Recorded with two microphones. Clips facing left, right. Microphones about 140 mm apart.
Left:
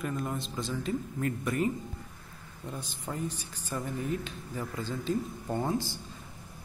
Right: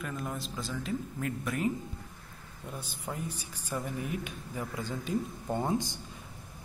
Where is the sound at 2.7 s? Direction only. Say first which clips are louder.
Left 1 dB; 10° right (ahead or behind).